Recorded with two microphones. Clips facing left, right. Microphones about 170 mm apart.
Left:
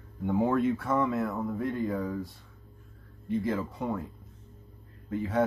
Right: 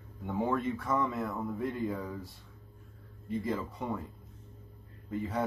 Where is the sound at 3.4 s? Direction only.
Centre (ahead or behind).